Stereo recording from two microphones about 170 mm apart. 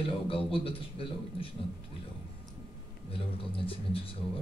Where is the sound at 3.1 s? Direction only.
35° left (ahead or behind).